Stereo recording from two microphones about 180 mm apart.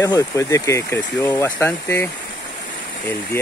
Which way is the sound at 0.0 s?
15° left (ahead or behind).